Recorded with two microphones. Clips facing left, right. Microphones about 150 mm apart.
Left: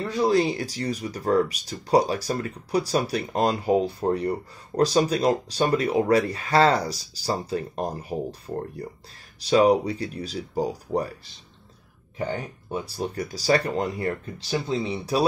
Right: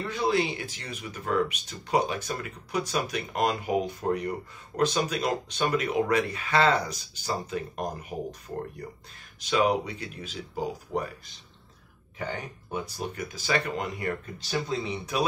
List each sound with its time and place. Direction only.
0.1 s speech: 40° left (ahead or behind)
12.7 s speech: 30° left (ahead or behind)